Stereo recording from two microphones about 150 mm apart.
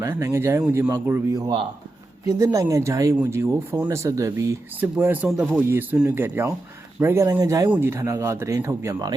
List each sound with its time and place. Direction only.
0.0 s speech: 15° right (ahead or behind)